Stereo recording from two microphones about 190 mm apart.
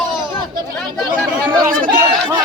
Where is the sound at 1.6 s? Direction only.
45° right (ahead or behind).